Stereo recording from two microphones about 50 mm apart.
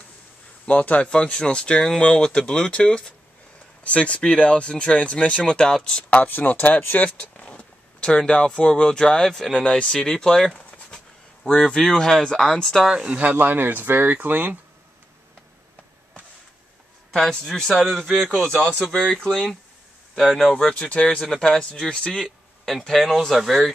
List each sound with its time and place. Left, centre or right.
0.7 s speech: left
5.4 s speech: centre
6.0 s speech: left
7.1 s speech: left; by 9.6 s centre
9.6 s speech: centre
12.9 s speech: right
13.3 s speech: right
17.1 s a man's voice: centre
19.0 s speech: centre
20.2 s speech: centre
20.5 s speech: centre
22.2 s speech: centre